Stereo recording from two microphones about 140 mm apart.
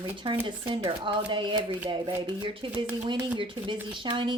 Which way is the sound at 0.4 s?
35° right (ahead or behind).